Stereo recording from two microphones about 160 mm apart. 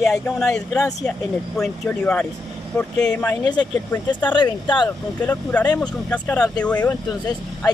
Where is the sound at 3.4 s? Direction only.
25° left (ahead or behind).